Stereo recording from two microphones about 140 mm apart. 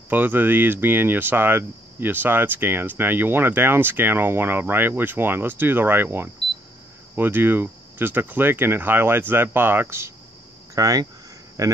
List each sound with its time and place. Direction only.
0.1 s speech: 15° right (ahead or behind)